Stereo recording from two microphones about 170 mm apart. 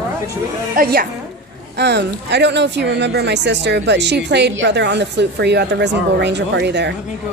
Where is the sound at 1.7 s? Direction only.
90° right.